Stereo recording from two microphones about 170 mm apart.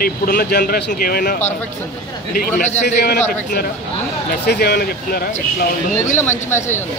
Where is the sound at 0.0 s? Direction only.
60° left (ahead or behind).